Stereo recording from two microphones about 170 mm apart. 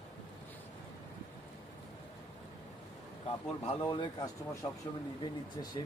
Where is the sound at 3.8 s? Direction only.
25° left (ahead or behind).